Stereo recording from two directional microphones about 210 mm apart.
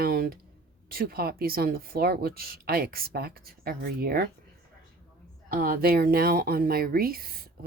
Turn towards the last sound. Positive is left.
turn(degrees=-45)  # may be behind; listen again after turning